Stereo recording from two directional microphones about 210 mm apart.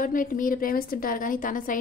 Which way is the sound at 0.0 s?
40° left (ahead or behind).